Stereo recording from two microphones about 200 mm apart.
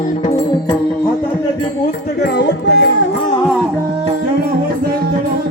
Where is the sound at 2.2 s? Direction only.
60° left (ahead or behind).